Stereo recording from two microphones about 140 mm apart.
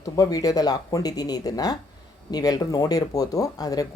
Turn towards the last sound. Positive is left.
turn(degrees=25)  # may be behind; listen again after turning